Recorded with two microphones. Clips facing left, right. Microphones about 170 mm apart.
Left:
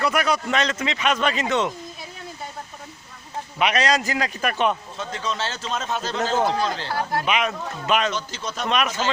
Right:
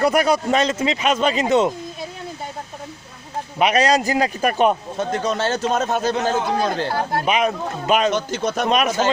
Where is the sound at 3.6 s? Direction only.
35° right (ahead or behind); by 6.9 s 55° right (ahead or behind).